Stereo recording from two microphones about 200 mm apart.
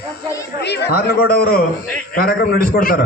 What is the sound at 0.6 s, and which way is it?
A man's voice, 55° left (ahead or behind).